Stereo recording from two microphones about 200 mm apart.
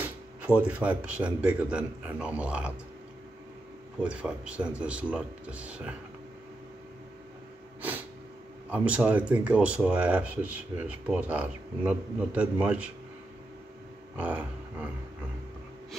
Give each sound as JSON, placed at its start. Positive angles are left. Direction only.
{"t": 0.6, "sound": "a man's voice", "side_deg": -5}
{"t": 4.0, "sound": "speech", "side_deg": -5}
{"t": 8.6, "sound": "a man's voice", "side_deg": -5}
{"t": 14.1, "sound": "a sound", "side_deg": -10}